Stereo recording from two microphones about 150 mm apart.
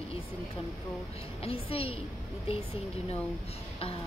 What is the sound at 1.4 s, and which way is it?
Speech, 40° left (ahead or behind).